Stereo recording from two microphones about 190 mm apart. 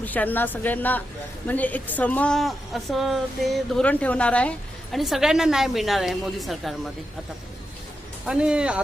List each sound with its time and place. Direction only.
0.0 s a woman's voice: 10° left (ahead or behind)
8.3 s a woman's voice: 5° right (ahead or behind)